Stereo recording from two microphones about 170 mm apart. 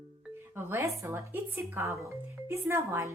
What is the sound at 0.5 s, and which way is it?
Speech, 15° right (ahead or behind).